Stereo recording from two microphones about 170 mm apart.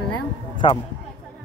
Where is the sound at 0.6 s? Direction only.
30° left (ahead or behind).